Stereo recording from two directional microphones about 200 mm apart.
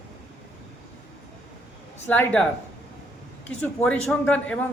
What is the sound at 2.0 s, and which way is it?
Speech, 10° left (ahead or behind).